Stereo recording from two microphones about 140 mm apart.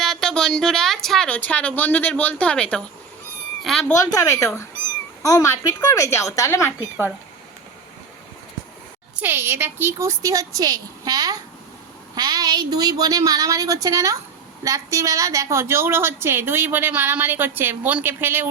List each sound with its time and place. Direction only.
0.0 s a woman's voice: 5° left (ahead or behind)
4.0 s speech: 25° left (ahead or behind)
9.2 s a woman's voice: 15° right (ahead or behind)